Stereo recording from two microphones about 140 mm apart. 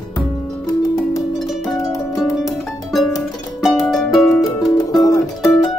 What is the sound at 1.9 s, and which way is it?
Music, 25° left (ahead or behind).